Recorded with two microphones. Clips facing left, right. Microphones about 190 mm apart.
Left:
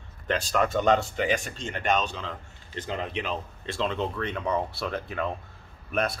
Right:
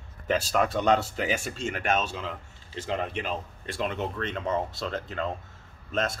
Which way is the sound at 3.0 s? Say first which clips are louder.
Even; 50° right (ahead or behind).